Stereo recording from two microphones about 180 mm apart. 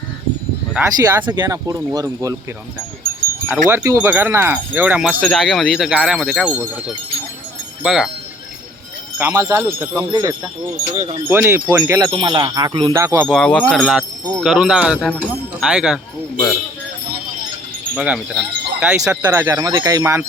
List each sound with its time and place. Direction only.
1.0 s speech: 10° right (ahead or behind)
3.5 s speech: 10° right (ahead or behind)
7.8 s speech: 5° right (ahead or behind)
9.1 s speech: 15° right (ahead or behind)
10.9 s speech: 40° right (ahead or behind)
11.3 s speech: 10° right (ahead or behind)
13.2 s speech: 5° left (ahead or behind)
17.9 s speech: 5° right (ahead or behind)